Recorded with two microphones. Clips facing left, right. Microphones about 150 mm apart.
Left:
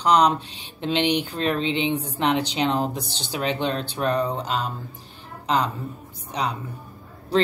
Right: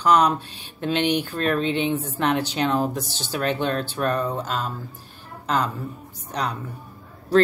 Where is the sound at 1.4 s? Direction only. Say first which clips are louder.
Right 1 dB; 50° right (ahead or behind).